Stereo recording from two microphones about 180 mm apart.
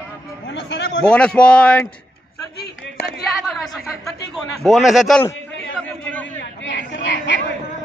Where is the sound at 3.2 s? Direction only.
Centre (ahead or behind).